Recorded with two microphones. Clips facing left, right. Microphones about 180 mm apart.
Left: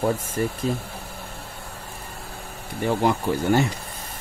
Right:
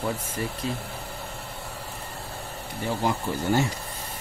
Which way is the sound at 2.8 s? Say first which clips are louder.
Left 5 dB; 65° left (ahead or behind).